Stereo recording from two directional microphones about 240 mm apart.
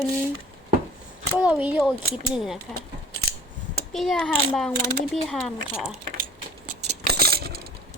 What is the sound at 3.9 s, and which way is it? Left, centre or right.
Speech, centre.